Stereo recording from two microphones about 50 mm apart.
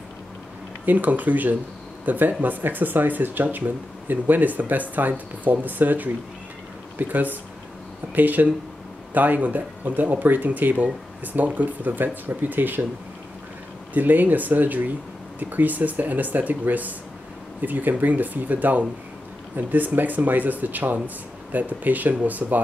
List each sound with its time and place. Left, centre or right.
0.8 s speech: right
13.9 s speech: right